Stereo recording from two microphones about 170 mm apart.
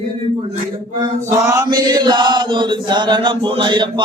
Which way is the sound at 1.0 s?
15° right (ahead or behind).